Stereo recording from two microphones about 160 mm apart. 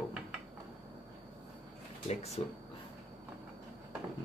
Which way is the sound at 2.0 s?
40° left (ahead or behind).